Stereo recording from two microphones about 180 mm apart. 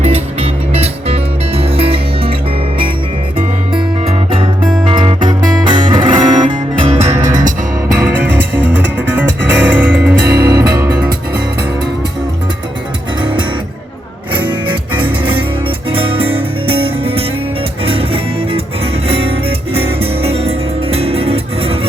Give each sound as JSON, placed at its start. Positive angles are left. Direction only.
{"t": 0.0, "sound": "music", "side_deg": -35}
{"t": 4.1, "sound": "music", "side_deg": -30}
{"t": 7.9, "sound": "music", "side_deg": -10}
{"t": 10.3, "sound": "music", "side_deg": -20}
{"t": 14.7, "sound": "music", "side_deg": -25}